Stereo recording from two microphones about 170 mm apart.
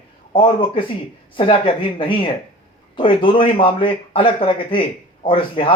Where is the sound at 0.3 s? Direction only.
30° left (ahead or behind).